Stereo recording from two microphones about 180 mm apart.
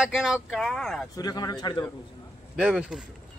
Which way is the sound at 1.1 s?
20° left (ahead or behind).